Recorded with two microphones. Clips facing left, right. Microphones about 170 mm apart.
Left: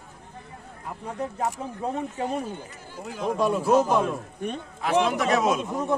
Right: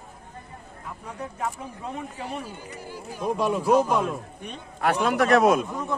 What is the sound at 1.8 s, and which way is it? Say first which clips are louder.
Speech: left 6 dB; 40° left (ahead or behind).